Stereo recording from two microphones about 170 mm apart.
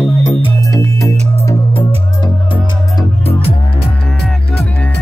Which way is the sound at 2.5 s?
35° left (ahead or behind).